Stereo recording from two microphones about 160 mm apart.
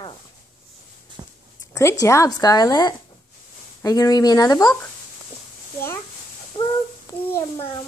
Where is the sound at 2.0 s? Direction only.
20° left (ahead or behind).